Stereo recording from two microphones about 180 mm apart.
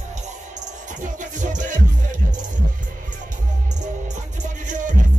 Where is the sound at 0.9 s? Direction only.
45° right (ahead or behind).